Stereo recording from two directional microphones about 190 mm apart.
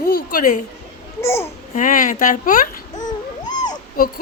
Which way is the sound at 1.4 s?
40° left (ahead or behind).